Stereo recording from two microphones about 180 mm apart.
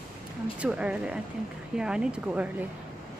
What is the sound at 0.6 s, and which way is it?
Speech, 5° right (ahead or behind).